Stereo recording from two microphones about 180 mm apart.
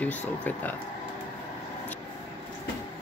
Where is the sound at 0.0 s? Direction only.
10° left (ahead or behind).